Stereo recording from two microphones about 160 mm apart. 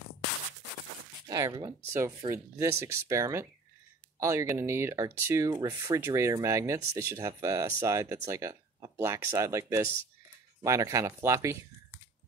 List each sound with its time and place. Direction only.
1.3 s speech: 25° right (ahead or behind)